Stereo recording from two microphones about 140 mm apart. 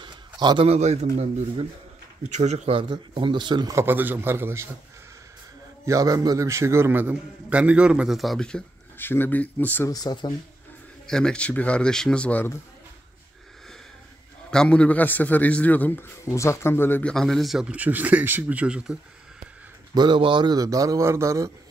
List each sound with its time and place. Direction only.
0.0 s a sound: 35° right (ahead or behind)
0.7 s speech: 50° right (ahead or behind)
2.8 s speech: 35° right (ahead or behind)
3.7 s a man's voice: 15° right (ahead or behind)
5.9 s a man's voice: 25° right (ahead or behind); by 9.8 s 10° left (ahead or behind)
9.8 s speech: 30° left (ahead or behind)
11.1 s a man's voice: 5° left (ahead or behind)
14.5 s a man's voice: 5° left (ahead or behind)
17.1 s a man's voice: 5° left (ahead or behind)
19.9 s a man's voice: 30° right (ahead or behind)